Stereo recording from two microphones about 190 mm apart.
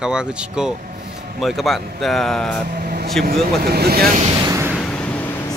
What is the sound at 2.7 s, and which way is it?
Speech, 55° right (ahead or behind).